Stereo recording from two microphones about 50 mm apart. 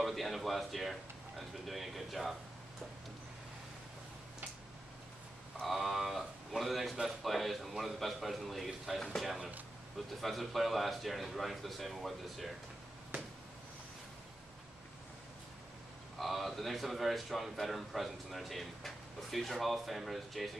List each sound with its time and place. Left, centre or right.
0.0 s speech: centre
5.7 s a man's voice: centre
13.1 s a sound: right
16.2 s a man's voice: centre